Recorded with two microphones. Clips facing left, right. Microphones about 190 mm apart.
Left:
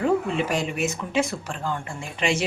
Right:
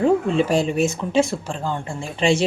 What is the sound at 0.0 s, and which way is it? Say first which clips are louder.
Speech: right 5 dB; 30° right (ahead or behind).